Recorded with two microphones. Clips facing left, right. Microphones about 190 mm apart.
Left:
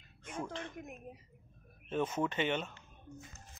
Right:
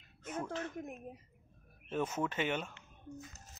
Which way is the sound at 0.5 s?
5° right (ahead or behind).